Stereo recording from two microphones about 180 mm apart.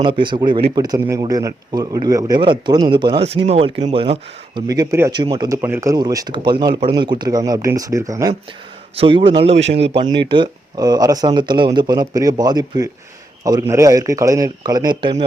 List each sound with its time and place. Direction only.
0.0 s a man's voice: 25° right (ahead or behind)
9.0 s a man's voice: 30° right (ahead or behind)
9.5 s speech: 85° right
10.2 s a man's voice: 25° right (ahead or behind)